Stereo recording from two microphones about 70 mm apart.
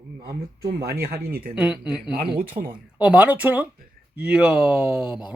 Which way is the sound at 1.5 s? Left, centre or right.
Centre.